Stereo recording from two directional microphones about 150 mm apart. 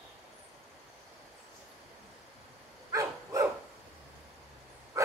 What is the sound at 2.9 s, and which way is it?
Dog, 20° right (ahead or behind).